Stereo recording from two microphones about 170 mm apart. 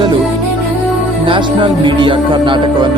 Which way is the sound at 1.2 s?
30° right (ahead or behind).